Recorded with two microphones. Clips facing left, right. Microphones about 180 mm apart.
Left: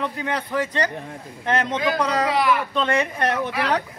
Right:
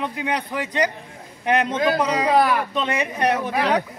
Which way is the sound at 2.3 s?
45° right (ahead or behind).